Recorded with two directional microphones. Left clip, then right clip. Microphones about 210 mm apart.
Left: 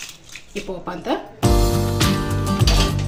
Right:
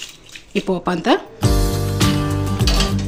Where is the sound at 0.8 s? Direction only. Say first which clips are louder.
Right 7 dB; 55° right (ahead or behind).